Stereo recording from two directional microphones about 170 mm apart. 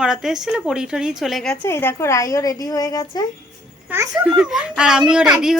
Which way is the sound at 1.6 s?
15° left (ahead or behind).